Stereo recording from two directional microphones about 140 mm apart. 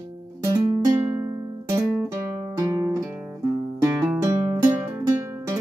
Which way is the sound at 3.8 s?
15° right (ahead or behind).